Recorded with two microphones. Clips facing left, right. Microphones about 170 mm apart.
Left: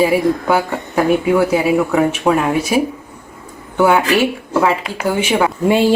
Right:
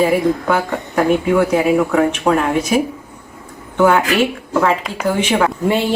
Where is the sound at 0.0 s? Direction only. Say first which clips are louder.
Left 1 dB; 10° left (ahead or behind).